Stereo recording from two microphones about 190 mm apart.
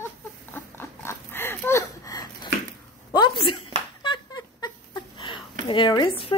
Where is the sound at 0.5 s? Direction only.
10° left (ahead or behind).